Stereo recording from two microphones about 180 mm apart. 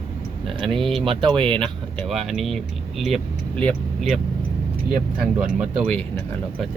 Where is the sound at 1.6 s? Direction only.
Centre (ahead or behind).